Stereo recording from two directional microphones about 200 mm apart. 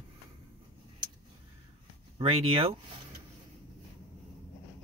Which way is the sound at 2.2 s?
30° right (ahead or behind).